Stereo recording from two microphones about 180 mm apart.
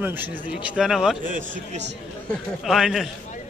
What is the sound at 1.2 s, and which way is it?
Speech, 45° right (ahead or behind).